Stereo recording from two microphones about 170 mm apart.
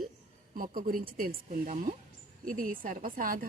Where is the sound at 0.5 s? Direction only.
55° right (ahead or behind).